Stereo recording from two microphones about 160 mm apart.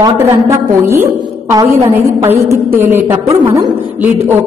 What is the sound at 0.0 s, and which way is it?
A woman's voice, 20° right (ahead or behind).